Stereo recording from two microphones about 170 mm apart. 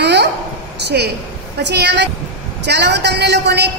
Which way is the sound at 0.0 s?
85° right.